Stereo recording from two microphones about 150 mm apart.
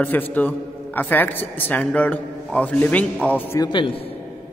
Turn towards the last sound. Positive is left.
turn(degrees=30)  # may be behind; listen again after turning